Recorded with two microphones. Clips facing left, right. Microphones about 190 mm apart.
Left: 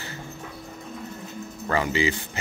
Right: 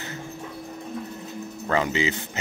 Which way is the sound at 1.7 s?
20° right (ahead or behind).